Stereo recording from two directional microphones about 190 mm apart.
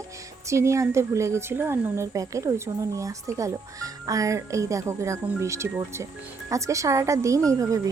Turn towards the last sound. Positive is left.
turn(degrees=-15)  # may be behind; listen again after turning